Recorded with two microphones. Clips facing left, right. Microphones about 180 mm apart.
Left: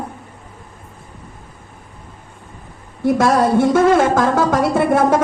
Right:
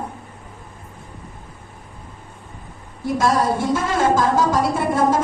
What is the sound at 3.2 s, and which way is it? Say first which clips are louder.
A woman's voice: left 4 dB; 60° left (ahead or behind).